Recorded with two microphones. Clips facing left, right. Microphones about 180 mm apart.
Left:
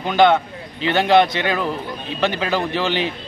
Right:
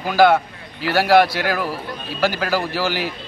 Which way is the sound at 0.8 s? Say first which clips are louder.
Even; 20° left (ahead or behind).